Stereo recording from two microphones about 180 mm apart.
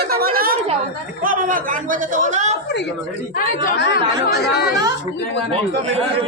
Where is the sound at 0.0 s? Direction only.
55° right (ahead or behind).